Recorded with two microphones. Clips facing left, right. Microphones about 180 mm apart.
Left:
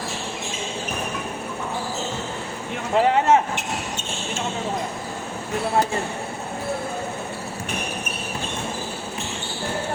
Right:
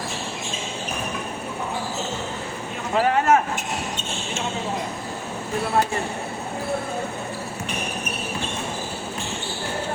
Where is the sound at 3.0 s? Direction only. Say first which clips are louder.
Left 1 dB; 20° left (ahead or behind).